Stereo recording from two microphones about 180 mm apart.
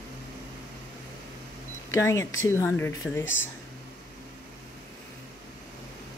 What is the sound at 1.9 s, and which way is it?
Speech, 15° left (ahead or behind).